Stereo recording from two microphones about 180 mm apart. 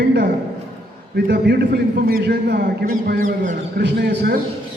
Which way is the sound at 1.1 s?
65° right (ahead or behind).